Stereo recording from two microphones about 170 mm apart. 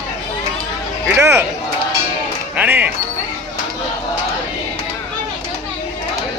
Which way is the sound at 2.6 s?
10° right (ahead or behind).